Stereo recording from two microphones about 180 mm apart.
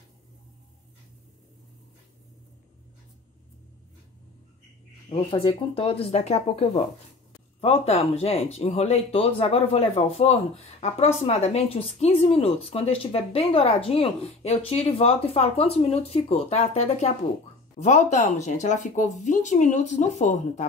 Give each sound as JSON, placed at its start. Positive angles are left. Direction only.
{"t": 5.1, "sound": "speech", "side_deg": 30}